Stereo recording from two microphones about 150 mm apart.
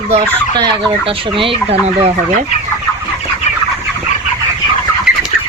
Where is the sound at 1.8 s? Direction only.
45° right (ahead or behind).